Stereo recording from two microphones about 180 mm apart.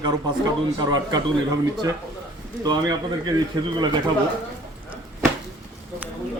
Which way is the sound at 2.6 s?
20° right (ahead or behind).